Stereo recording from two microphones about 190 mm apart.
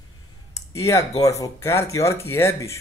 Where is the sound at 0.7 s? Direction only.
15° left (ahead or behind).